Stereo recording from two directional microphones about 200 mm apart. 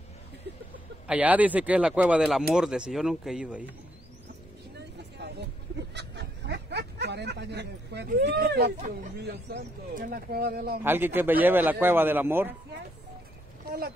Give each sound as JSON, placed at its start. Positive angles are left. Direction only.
{"t": 1.0, "sound": "speech", "side_deg": -5}
{"t": 4.7, "sound": "vehicle", "side_deg": -55}
{"t": 5.9, "sound": "a sound", "side_deg": -60}
{"t": 9.2, "sound": "speech", "side_deg": -55}
{"t": 10.8, "sound": "a man's voice", "side_deg": -10}
{"t": 13.7, "sound": "speech", "side_deg": -50}